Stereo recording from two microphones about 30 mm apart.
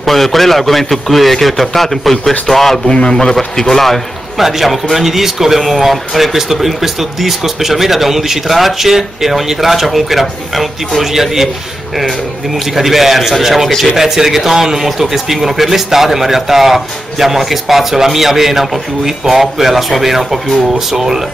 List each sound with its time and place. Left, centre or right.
0.0 s a man's voice: centre
3.0 s a man's voice: left
4.4 s speech: centre
12.7 s a man's voice: centre